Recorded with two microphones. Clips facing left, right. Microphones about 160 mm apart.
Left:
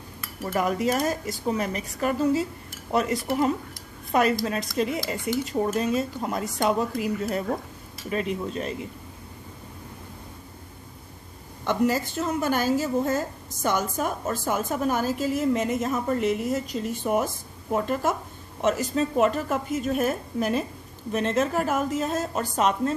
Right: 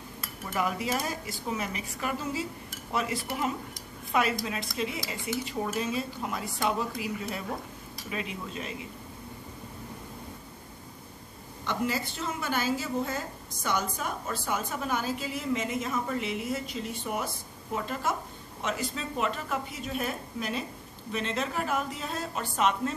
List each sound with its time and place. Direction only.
0.5 s a woman's voice: 45° left (ahead or behind)
11.6 s a woman's voice: 45° left (ahead or behind)
18.6 s a woman's voice: 45° left (ahead or behind)